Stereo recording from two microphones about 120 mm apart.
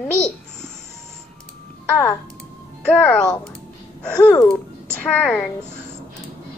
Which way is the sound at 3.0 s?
15° left (ahead or behind).